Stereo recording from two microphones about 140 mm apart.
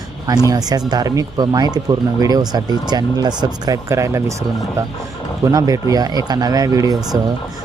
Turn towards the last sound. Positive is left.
turn(degrees=-25)  # may be behind; listen again after turning